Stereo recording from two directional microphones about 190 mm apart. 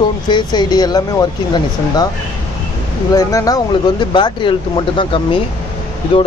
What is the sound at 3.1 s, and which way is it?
Speech, 20° left (ahead or behind).